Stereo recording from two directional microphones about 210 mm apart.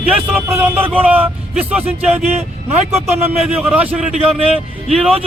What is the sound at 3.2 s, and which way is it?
Speech, 10° right (ahead or behind).